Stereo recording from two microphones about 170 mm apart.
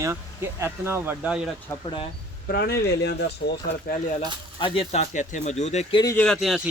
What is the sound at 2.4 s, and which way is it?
Speech, 65° left (ahead or behind).